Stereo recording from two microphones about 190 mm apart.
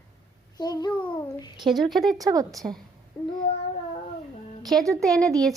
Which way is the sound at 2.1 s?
20° right (ahead or behind).